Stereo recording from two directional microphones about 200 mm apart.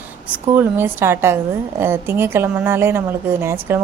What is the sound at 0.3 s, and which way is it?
A woman's voice, 10° right (ahead or behind).